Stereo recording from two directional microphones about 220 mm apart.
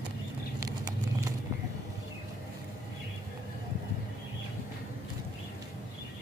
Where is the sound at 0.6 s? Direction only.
15° right (ahead or behind).